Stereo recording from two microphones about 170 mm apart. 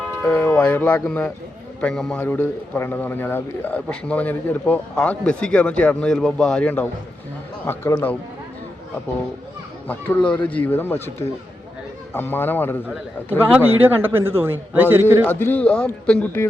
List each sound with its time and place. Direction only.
0.2 s a man's voice: 5° left (ahead or behind)
9.8 s a man's voice: 10° left (ahead or behind)
13.5 s a man's voice: 10° right (ahead or behind)
15.3 s a man's voice: 10° left (ahead or behind)